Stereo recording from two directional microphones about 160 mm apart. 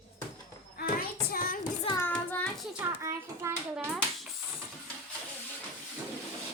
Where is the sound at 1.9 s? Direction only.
10° left (ahead or behind).